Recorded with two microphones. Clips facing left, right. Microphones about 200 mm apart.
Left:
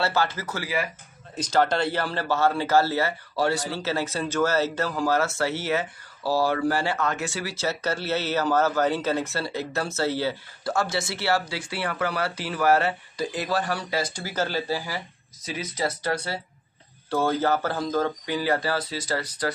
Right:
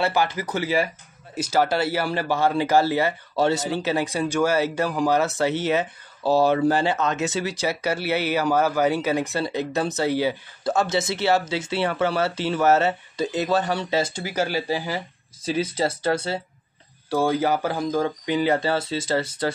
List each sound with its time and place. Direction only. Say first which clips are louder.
0.0 s speech: right 2 dB; 15° right (ahead or behind)
1.3 s speech: right 1 dB; 10° right (ahead or behind); by 14.3 s 25° right (ahead or behind)
14.3 s speech: right 2 dB; 10° right (ahead or behind)
15.4 s speech: right 5 dB; 30° right (ahead or behind)
17.1 s speech: right 2 dB; 10° right (ahead or behind)